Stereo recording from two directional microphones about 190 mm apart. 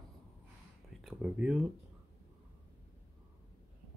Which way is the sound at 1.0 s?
5° right (ahead or behind).